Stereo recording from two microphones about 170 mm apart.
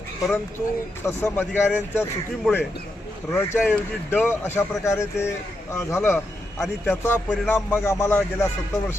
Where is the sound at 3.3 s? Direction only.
15° left (ahead or behind).